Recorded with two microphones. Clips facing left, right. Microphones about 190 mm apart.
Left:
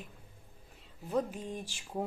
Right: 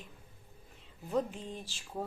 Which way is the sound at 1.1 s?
10° left (ahead or behind).